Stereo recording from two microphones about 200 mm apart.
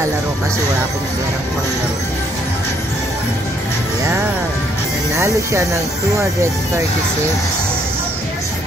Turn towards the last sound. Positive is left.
turn(degrees=-15)  # may be behind; listen again after turning